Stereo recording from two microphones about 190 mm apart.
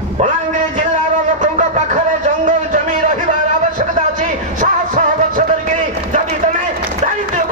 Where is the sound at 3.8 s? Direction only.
40° right (ahead or behind).